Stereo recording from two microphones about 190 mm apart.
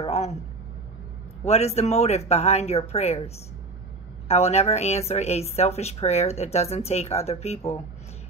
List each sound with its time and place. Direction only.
0.0 s a sound: 35° left (ahead or behind)
1.4 s a woman's voice: 35° left (ahead or behind)
4.3 s a woman's voice: 35° left (ahead or behind)